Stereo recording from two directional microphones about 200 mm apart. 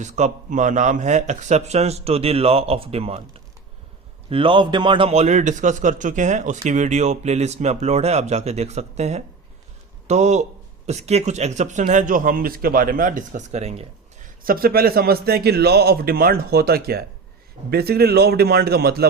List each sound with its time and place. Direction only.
0.0 s a man's voice: 35° right (ahead or behind)
14.4 s a man's voice: 45° right (ahead or behind)